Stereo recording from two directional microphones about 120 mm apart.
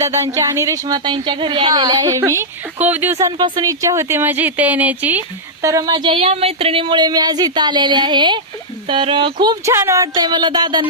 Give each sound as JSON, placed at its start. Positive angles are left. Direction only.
{"t": 0.0, "sound": "speech", "side_deg": -25}
{"t": 3.2, "sound": "speech", "side_deg": -30}
{"t": 5.6, "sound": "speech", "side_deg": -30}
{"t": 6.2, "sound": "speech", "side_deg": -60}
{"t": 9.6, "sound": "speech", "side_deg": -25}